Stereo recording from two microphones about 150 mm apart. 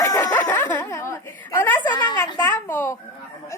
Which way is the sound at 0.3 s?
10° left (ahead or behind).